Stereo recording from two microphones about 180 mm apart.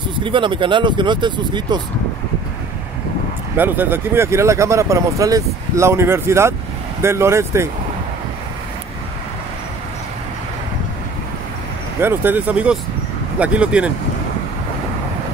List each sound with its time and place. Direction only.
0.1 s speech: 25° right (ahead or behind)
3.5 s speech: 10° right (ahead or behind)
12.0 s speech: 10° right (ahead or behind)